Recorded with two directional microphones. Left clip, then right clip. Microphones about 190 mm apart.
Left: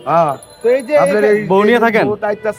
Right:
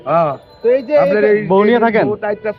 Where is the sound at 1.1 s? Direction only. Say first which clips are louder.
Even; 10° left (ahead or behind); by 2.4 s 25° left (ahead or behind).